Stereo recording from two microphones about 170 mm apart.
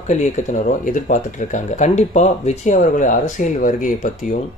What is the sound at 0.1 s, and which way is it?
Speech, 45° left (ahead or behind).